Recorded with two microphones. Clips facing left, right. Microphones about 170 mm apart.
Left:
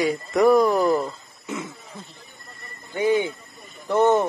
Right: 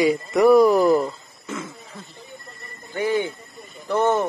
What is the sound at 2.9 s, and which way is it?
Speech, 15° left (ahead or behind).